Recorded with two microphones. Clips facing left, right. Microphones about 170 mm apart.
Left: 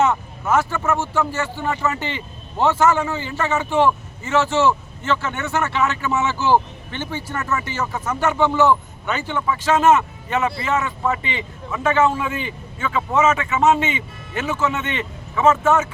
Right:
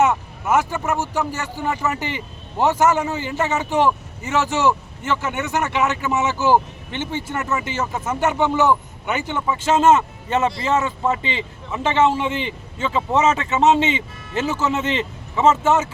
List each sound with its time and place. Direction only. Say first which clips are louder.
0.4 s a man's voice: even; 15° right (ahead or behind)